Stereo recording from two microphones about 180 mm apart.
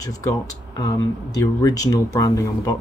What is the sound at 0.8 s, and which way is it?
Speech, 20° left (ahead or behind).